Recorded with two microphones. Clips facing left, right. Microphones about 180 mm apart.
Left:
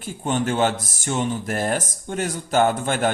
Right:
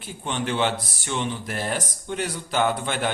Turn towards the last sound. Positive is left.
turn(degrees=45)  # may be behind; listen again after turning